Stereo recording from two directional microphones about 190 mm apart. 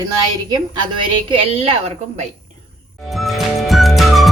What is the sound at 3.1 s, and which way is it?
Music, centre (ahead or behind).